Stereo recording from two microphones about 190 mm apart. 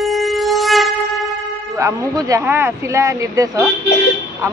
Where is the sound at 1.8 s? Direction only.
15° right (ahead or behind).